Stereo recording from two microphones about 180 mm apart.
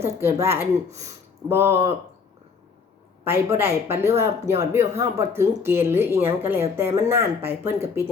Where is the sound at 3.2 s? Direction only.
15° right (ahead or behind).